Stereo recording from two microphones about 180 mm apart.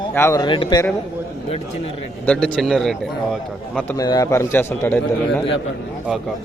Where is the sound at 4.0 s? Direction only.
20° left (ahead or behind).